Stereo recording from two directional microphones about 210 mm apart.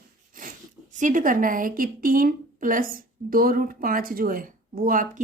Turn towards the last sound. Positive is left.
turn(degrees=-40)  # may be behind; listen again after turning